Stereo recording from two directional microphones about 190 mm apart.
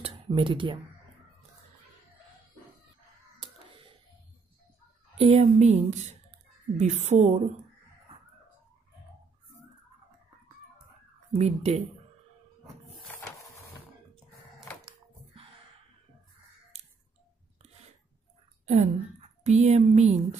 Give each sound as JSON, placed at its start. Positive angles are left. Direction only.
{"t": 0.0, "sound": "a sound", "side_deg": -30}
{"t": 5.1, "sound": "a woman's voice", "side_deg": -30}
{"t": 11.3, "sound": "a woman's voice", "side_deg": -35}
{"t": 18.7, "sound": "a woman's voice", "side_deg": -35}